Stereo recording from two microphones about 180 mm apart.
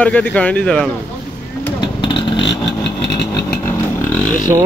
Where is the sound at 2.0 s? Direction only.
25° left (ahead or behind).